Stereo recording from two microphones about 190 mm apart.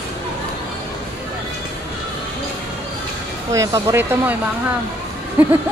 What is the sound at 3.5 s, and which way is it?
Speech, 15° right (ahead or behind).